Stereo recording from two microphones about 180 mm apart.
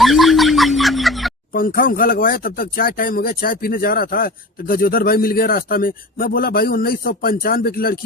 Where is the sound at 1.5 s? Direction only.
50° left (ahead or behind).